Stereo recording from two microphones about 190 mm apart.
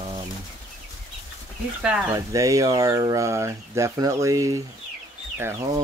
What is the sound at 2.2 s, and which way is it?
Speech, 15° right (ahead or behind).